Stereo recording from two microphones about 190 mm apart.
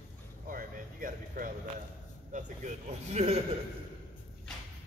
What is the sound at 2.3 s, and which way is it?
Speech, 40° right (ahead or behind).